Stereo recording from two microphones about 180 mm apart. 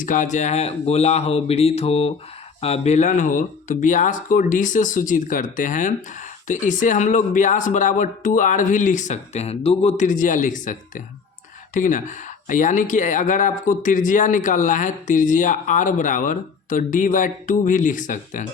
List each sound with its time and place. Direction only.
0.0 s speech: 45° left (ahead or behind)